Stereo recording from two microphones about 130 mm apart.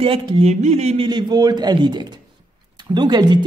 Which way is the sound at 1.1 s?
30° right (ahead or behind).